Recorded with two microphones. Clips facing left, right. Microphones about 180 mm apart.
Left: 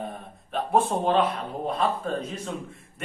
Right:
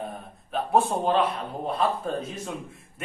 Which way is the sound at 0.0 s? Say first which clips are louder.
Even; centre (ahead or behind).